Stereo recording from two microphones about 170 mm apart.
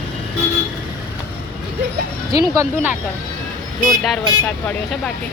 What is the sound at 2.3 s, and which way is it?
Speech, 20° right (ahead or behind).